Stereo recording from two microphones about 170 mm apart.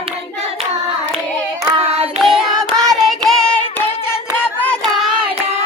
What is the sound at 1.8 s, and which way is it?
Singing, 35° right (ahead or behind).